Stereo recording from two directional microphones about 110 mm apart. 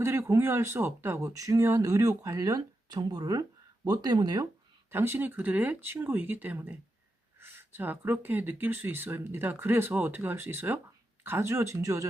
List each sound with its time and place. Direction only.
0.0 s speech: 25° right (ahead or behind)
4.9 s speech: 20° right (ahead or behind)